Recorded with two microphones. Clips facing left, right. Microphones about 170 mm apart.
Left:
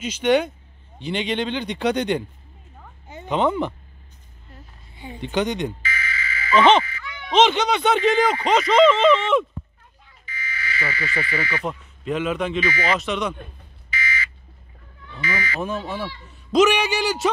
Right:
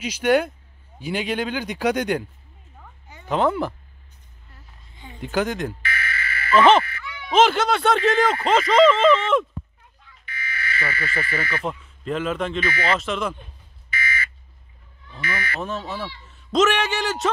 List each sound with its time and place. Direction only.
0.0 s speech: 10° right (ahead or behind)
3.3 s speech: centre (ahead or behind)
4.5 s a sound: 15° left (ahead or behind)
5.2 s speech: 5° right (ahead or behind)
5.8 s a sound: 60° right (ahead or behind)
6.5 s speech: centre (ahead or behind)
10.2 s alarm: 60° right (ahead or behind)
11.6 s speech: 5° left (ahead or behind)
13.8 s smoke detector: 55° right (ahead or behind)
15.2 s speech: 55° right (ahead or behind)
15.6 s speech: 5° left (ahead or behind)